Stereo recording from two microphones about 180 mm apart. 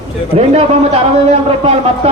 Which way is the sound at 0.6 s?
35° right (ahead or behind).